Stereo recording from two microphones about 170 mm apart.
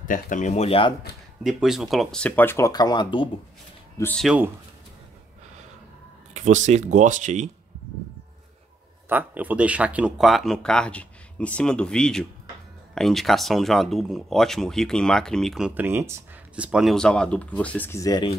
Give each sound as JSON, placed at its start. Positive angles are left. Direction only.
{"t": 0.1, "sound": "speech", "side_deg": 45}
{"t": 1.4, "sound": "speech", "side_deg": -5}
{"t": 4.0, "sound": "speech", "side_deg": 10}
{"t": 6.3, "sound": "speech", "side_deg": -45}
{"t": 9.1, "sound": "speech", "side_deg": -10}